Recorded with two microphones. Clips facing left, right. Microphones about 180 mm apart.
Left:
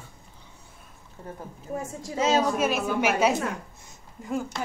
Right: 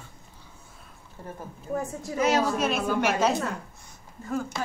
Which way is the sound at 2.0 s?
25° left (ahead or behind).